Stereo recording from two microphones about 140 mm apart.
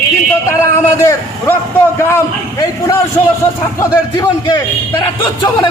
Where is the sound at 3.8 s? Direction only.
25° left (ahead or behind).